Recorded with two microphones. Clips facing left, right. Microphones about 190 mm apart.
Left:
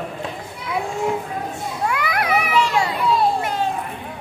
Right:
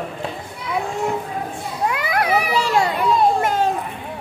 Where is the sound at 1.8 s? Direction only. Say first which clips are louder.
Right 2 dB; 25° right (ahead or behind).